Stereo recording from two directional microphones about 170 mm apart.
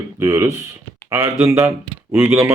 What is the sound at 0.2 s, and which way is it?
Speech, 15° right (ahead or behind).